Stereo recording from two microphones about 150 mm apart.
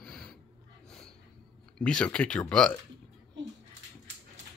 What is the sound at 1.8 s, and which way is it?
Speech, 5° left (ahead or behind).